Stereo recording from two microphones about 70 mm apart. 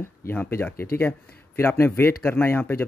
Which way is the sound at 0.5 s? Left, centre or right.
Left.